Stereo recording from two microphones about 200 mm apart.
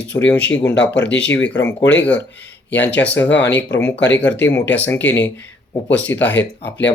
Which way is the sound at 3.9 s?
60° left (ahead or behind).